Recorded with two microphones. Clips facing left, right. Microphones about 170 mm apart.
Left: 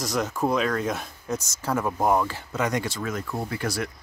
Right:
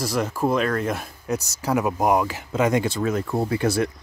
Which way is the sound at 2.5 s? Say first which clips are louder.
Right 6 dB; 25° right (ahead or behind).